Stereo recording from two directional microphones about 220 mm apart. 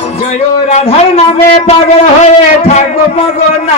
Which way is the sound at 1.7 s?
30° left (ahead or behind).